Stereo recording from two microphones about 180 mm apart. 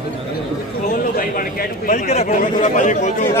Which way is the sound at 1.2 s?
50° left (ahead or behind).